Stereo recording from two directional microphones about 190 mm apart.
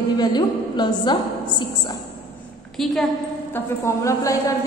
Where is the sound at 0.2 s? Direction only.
20° left (ahead or behind).